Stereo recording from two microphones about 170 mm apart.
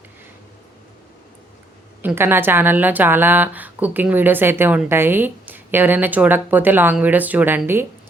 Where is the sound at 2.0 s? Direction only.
10° right (ahead or behind).